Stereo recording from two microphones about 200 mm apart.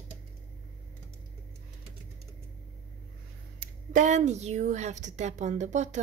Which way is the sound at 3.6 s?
40° right (ahead or behind).